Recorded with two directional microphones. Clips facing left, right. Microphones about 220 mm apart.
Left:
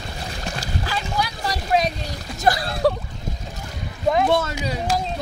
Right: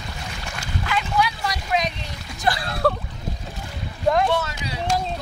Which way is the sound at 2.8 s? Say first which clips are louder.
Left 2 dB; 10° left (ahead or behind).